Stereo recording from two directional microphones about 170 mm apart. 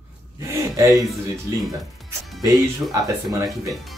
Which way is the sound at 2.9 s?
20° right (ahead or behind).